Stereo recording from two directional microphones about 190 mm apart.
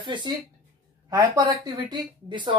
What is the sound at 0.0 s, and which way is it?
Speech, 25° right (ahead or behind).